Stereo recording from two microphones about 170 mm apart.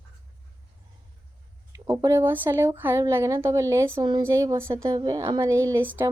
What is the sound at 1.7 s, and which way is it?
A woman's voice, 15° right (ahead or behind).